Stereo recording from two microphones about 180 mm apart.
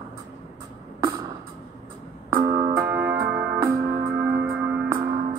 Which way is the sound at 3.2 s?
10° right (ahead or behind).